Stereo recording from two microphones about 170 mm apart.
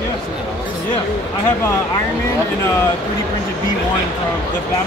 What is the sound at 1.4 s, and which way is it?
Speech, 20° left (ahead or behind).